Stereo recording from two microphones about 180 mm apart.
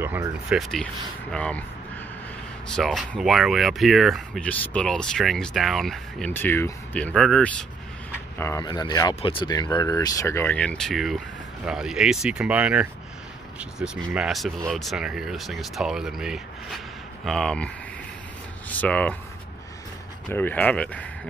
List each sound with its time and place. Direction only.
0.0 s speech: 10° right (ahead or behind); by 1.6 s 5° left (ahead or behind)
2.7 s speech: centre (ahead or behind)
8.4 s speech: 15° left (ahead or behind)
18.7 s speech: 10° left (ahead or behind)
20.2 s speech: 10° left (ahead or behind)